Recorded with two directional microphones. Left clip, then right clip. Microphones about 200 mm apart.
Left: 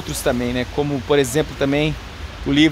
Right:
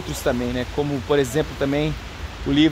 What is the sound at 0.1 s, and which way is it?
Speech, 10° left (ahead or behind).